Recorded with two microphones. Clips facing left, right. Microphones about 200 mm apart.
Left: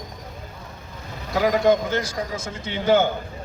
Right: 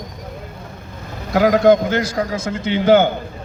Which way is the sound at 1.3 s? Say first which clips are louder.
Right 6 dB; 70° right (ahead or behind).